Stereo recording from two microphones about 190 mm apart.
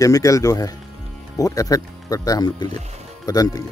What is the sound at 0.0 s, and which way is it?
Speech, 15° left (ahead or behind).